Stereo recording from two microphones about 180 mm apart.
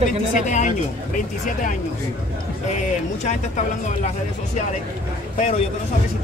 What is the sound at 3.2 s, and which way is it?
Speech, 40° left (ahead or behind).